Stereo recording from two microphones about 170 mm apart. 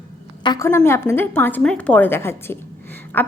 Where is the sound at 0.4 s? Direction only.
20° left (ahead or behind).